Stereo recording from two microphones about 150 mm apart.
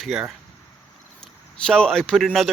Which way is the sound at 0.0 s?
5° right (ahead or behind).